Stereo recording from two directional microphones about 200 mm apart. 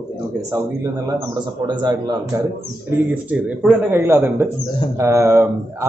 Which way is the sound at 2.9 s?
5° right (ahead or behind).